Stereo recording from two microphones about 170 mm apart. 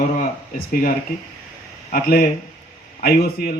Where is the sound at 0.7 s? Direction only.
55° left (ahead or behind).